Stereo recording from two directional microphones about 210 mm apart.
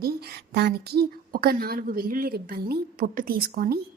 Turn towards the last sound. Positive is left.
turn(degrees=-45)  # may be behind; listen again after turning